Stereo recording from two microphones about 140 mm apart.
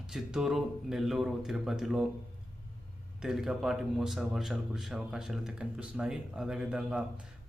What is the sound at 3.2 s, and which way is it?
Speech, 5° right (ahead or behind).